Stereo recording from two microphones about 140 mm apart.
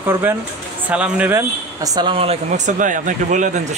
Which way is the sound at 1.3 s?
25° right (ahead or behind).